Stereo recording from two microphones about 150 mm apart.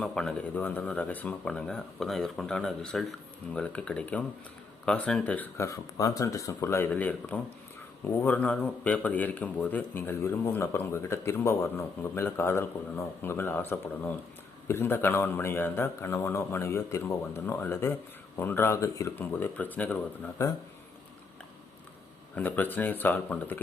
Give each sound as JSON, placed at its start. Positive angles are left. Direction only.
{"t": 0.0, "sound": "a man's voice", "side_deg": 5}
{"t": 5.6, "sound": "a man's voice", "side_deg": 20}
{"t": 22.4, "sound": "a man's voice", "side_deg": 10}